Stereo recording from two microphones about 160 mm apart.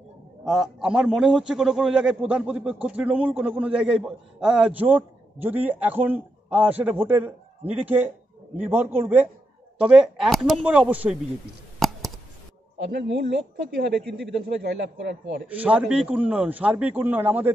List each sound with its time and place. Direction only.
0.5 s a man's voice: 5° right (ahead or behind)
11.8 s a sound: centre (ahead or behind)
12.8 s a man's voice: 90° right
15.4 s a man's voice: 10° right (ahead or behind)